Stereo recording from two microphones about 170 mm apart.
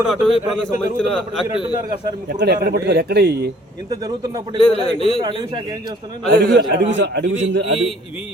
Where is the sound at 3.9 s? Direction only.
20° right (ahead or behind).